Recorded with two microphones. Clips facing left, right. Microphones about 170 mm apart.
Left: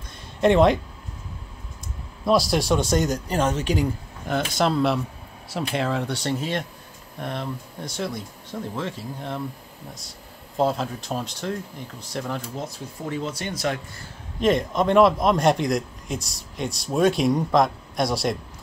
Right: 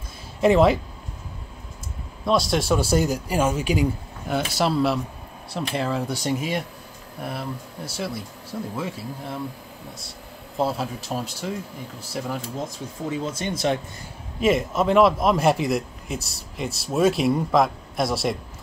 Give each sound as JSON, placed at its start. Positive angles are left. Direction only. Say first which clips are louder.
{"t": 0.4, "sound": "a man's voice", "louder": "even", "side_deg": -5}
{"t": 2.2, "sound": "a man's voice", "louder": "left 1 dB", "side_deg": 0}
{"t": 10.6, "sound": "a man's voice", "louder": "left 2 dB", "side_deg": -5}
{"t": 13.1, "sound": "speech", "louder": "right 1 dB", "side_deg": -20}
{"t": 14.4, "sound": "a man's voice", "louder": "even", "side_deg": -5}